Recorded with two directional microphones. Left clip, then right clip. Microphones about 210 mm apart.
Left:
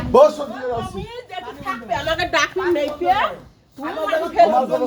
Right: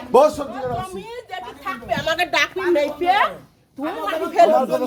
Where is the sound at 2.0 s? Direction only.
60° right (ahead or behind).